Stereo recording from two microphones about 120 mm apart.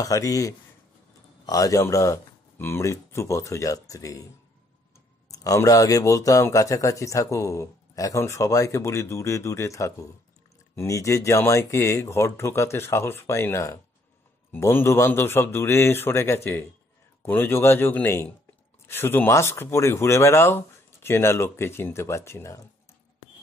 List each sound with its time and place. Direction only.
0.0 s speech: 30° left (ahead or behind)
5.3 s speech: 30° left (ahead or behind)